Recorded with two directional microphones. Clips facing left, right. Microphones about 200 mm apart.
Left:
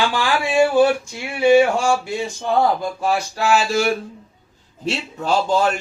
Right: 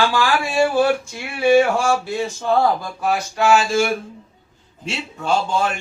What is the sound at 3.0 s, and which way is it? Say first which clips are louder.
Speech: right 1 dB; 35° left (ahead or behind).